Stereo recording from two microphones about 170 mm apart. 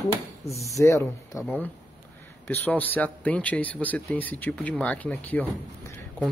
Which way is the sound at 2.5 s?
10° left (ahead or behind).